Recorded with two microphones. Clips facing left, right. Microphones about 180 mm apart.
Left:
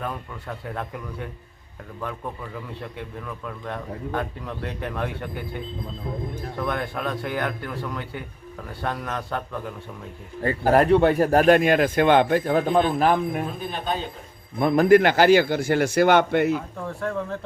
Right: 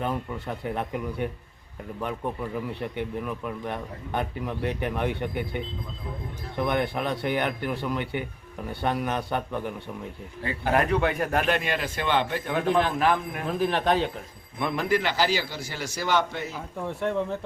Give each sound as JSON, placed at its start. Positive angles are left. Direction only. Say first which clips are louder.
{"t": 0.0, "sound": "a man's voice", "louder": "right 3 dB", "side_deg": -20}
{"t": 6.6, "sound": "a man's voice", "louder": "right 2 dB", "side_deg": -15}
{"t": 10.4, "sound": "speech", "louder": "left 6 dB", "side_deg": 40}
{"t": 13.6, "sound": "speech", "louder": "right 5 dB", "side_deg": -80}
{"t": 14.6, "sound": "a man's voice", "louder": "left 10 dB", "side_deg": 45}
{"t": 16.8, "sound": "a man's voice", "louder": "right 1 dB", "side_deg": -20}